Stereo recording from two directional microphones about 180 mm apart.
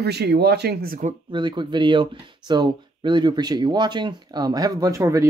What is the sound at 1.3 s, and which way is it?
Speech, 25° right (ahead or behind).